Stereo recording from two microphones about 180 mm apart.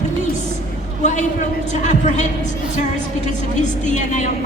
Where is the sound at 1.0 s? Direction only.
40° left (ahead or behind).